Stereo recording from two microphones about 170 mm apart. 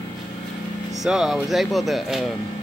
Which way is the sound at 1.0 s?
5° right (ahead or behind).